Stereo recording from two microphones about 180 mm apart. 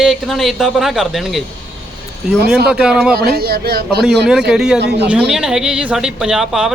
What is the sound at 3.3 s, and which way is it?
Speech, 60° right (ahead or behind).